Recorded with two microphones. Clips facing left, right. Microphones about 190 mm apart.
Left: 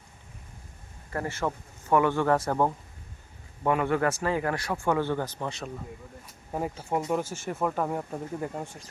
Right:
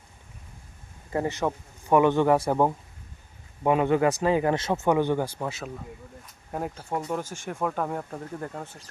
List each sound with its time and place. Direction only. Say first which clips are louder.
1.1 s a man's voice: right 4 dB; 20° right (ahead or behind); by 8.8 s 10° left (ahead or behind)